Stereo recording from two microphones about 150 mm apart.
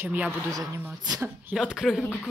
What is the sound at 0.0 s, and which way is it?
Speech, 10° right (ahead or behind).